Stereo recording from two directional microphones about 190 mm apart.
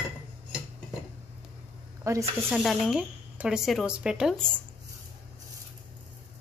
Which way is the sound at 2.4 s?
Centre (ahead or behind).